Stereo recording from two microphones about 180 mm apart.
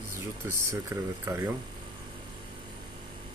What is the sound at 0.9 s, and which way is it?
Speech, 15° right (ahead or behind).